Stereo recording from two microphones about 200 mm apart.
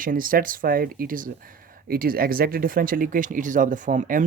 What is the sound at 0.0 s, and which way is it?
Speech, 45° right (ahead or behind).